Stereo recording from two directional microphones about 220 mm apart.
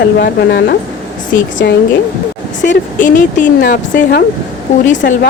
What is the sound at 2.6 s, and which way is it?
Speech, 35° left (ahead or behind).